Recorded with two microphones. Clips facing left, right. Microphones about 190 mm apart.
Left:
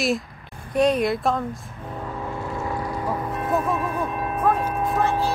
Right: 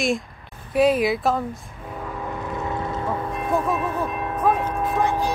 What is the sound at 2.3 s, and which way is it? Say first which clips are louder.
Vehicle: right 1 dB; 20° right (ahead or behind).